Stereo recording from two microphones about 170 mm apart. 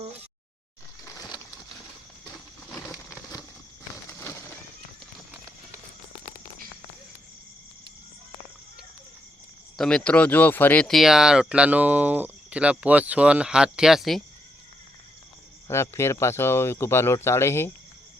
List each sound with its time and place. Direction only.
2.7 s a sound: 20° left (ahead or behind)
9.7 s speech: 5° left (ahead or behind)
15.6 s speech: 15° left (ahead or behind)